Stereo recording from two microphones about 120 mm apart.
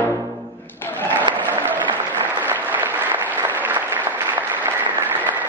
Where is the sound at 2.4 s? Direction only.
15° right (ahead or behind).